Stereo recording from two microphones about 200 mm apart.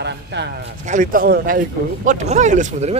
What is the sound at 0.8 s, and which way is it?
Speech, 40° right (ahead or behind).